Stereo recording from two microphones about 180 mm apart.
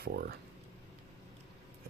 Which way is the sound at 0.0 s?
60° right (ahead or behind).